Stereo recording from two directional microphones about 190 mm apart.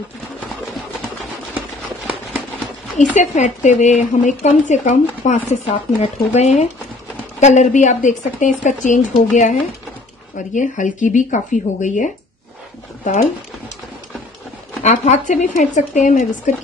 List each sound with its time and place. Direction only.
3.0 s speech: 40° left (ahead or behind)
14.8 s speech: 40° left (ahead or behind)